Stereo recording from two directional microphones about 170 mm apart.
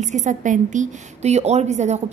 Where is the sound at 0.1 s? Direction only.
45° right (ahead or behind).